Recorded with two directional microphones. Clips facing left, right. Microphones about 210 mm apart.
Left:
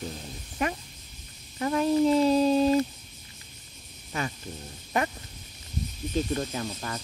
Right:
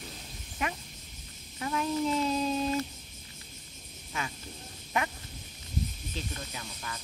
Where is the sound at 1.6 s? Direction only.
40° left (ahead or behind).